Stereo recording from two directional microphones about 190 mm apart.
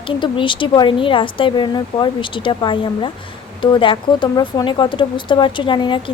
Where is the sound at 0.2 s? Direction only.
25° left (ahead or behind).